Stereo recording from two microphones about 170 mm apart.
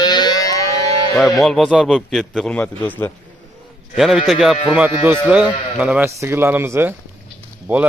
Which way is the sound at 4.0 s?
Centre (ahead or behind).